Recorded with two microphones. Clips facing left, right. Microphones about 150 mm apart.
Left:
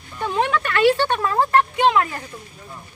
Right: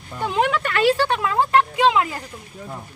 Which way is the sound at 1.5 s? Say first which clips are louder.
Right 1 dB; 15° right (ahead or behind).